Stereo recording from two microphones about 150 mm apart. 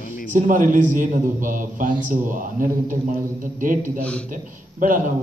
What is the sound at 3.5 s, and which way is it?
A man's voice, 60° right (ahead or behind).